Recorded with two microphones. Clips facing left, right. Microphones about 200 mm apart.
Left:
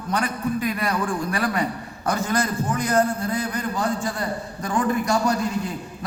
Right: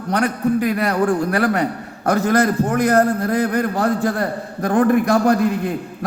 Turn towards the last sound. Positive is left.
turn(degrees=-60)  # may be behind; listen again after turning